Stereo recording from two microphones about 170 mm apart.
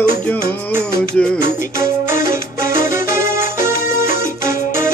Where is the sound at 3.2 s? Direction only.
15° right (ahead or behind).